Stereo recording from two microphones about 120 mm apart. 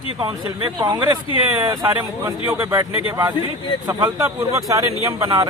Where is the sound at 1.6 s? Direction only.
25° right (ahead or behind).